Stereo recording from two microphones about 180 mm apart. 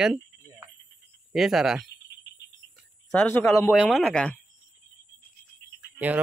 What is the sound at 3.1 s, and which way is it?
Speech, 5° left (ahead or behind).